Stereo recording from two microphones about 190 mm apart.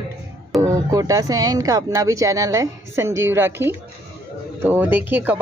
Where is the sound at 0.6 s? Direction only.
20° right (ahead or behind).